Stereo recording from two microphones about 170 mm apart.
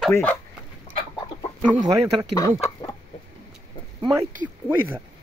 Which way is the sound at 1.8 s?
25° right (ahead or behind).